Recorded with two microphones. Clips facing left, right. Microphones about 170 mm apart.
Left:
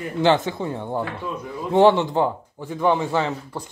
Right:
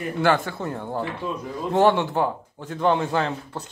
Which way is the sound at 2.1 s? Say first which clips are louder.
Left 2 dB; 15° left (ahead or behind).